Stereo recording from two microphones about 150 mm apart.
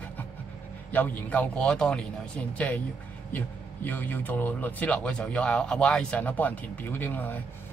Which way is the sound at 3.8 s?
10° left (ahead or behind).